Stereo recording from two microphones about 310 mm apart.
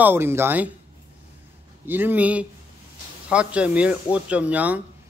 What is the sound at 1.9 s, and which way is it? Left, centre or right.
Speech, centre.